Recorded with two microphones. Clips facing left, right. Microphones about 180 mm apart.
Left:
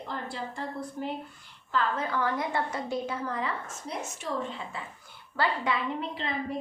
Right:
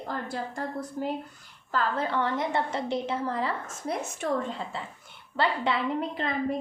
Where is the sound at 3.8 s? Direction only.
55° right (ahead or behind).